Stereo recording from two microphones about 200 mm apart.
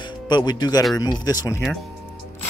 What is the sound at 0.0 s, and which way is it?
Speech, 20° left (ahead or behind).